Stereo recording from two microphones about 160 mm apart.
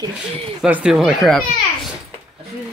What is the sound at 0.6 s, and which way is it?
Speech, 5° right (ahead or behind).